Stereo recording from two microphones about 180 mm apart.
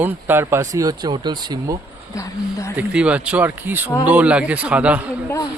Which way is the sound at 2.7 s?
5° right (ahead or behind).